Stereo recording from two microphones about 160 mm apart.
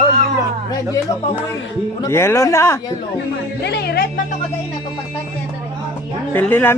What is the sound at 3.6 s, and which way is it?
Speech, 85° left.